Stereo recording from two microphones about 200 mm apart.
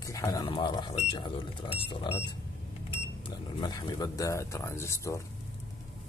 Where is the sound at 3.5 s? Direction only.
20° left (ahead or behind).